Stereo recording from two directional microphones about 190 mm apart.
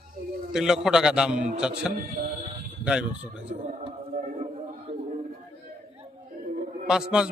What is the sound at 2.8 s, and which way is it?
Speech, 5° right (ahead or behind).